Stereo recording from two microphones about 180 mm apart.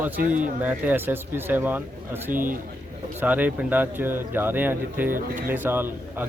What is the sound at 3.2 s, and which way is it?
Speech, 10° right (ahead or behind).